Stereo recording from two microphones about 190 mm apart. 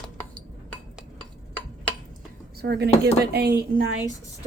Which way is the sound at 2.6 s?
60° right (ahead or behind).